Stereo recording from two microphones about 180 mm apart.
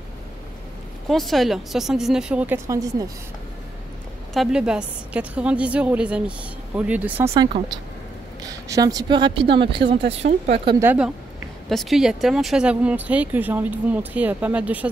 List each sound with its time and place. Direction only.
1.0 s speech: centre (ahead or behind); by 3.1 s 20° right (ahead or behind)
4.3 s speech: centre (ahead or behind)
8.4 s speech: 20° right (ahead or behind); by 10.5 s 35° right (ahead or behind)
10.8 s speech: 10° right (ahead or behind)